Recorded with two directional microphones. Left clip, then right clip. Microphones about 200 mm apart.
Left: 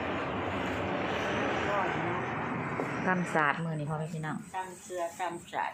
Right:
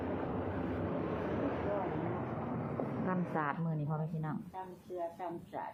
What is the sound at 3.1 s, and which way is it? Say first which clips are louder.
Speech: left 10 dB; 25° left (ahead or behind).